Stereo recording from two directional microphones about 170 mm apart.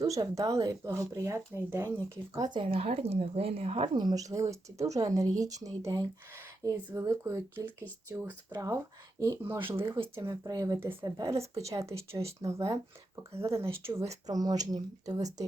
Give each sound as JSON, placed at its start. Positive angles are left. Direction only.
{"t": 0.0, "sound": "speech", "side_deg": -20}
{"t": 2.3, "sound": "speech", "side_deg": -25}
{"t": 9.9, "sound": "speech", "side_deg": -25}